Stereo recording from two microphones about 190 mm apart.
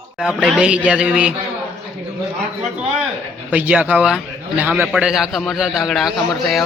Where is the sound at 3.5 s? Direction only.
10° right (ahead or behind).